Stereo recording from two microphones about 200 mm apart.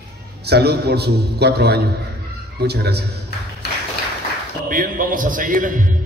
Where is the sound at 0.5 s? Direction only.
55° right (ahead or behind).